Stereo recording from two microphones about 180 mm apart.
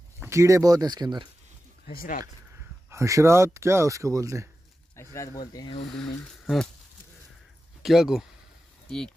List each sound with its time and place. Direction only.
0.2 s speech: 15° right (ahead or behind)
1.9 s speech: 50° left (ahead or behind)
2.9 s speech: 15° right (ahead or behind)
4.9 s speech: 15° left (ahead or behind)
5.9 s speech: 5° left (ahead or behind)
7.8 s speech: centre (ahead or behind)